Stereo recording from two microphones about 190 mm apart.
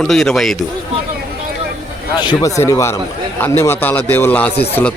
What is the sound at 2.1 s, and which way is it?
A man's voice, 20° left (ahead or behind).